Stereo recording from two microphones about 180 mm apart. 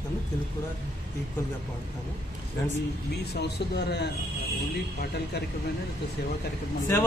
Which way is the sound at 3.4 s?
65° left (ahead or behind).